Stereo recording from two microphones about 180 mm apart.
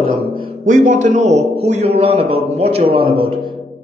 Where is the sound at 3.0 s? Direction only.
55° right (ahead or behind).